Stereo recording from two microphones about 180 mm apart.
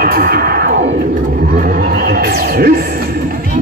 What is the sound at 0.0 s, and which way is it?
Music, 55° right (ahead or behind).